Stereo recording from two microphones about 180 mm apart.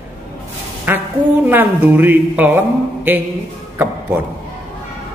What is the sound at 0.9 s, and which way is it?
A man's voice, 10° right (ahead or behind).